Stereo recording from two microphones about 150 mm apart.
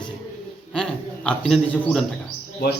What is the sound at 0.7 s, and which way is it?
A man's voice, 5° left (ahead or behind).